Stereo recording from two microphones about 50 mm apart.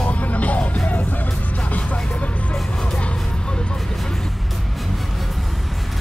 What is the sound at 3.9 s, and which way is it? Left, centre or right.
Vehicle, centre.